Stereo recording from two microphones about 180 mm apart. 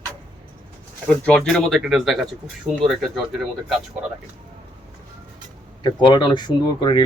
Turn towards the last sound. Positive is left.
turn(degrees=25)  # may be behind; listen again after turning